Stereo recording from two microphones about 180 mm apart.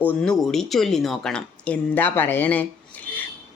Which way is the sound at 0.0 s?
5° left (ahead or behind).